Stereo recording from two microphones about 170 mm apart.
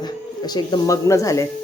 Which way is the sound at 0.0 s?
25° left (ahead or behind).